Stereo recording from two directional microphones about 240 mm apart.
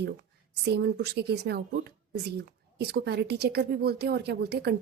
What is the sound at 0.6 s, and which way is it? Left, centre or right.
A woman's voice, right.